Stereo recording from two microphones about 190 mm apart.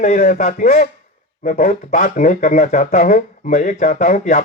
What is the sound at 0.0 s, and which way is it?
Speech, 40° left (ahead or behind).